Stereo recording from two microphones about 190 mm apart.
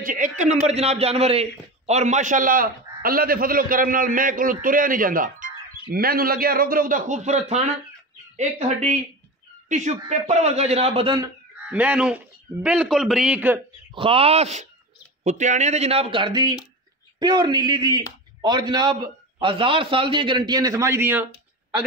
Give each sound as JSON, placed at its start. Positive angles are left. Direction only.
{"t": 0.0, "sound": "a man's voice", "side_deg": -45}
{"t": 11.7, "sound": "a man's voice", "side_deg": -5}
{"t": 13.9, "sound": "a man's voice", "side_deg": -30}